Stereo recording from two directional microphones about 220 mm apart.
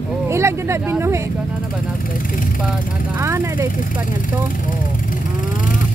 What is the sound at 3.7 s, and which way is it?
Speech, 35° left (ahead or behind).